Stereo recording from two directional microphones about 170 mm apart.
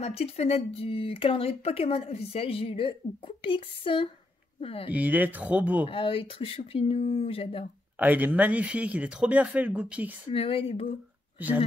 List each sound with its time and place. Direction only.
0.0 s speech: 35° left (ahead or behind)
4.9 s speech: 10° right (ahead or behind)
5.9 s speech: 30° left (ahead or behind)
8.0 s speech: 10° right (ahead or behind)
10.3 s speech: 35° left (ahead or behind)
11.3 s speech: 10° right (ahead or behind)